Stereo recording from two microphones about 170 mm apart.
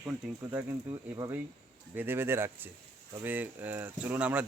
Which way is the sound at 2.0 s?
15° right (ahead or behind).